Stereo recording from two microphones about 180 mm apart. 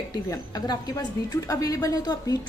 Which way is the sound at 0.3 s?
20° left (ahead or behind).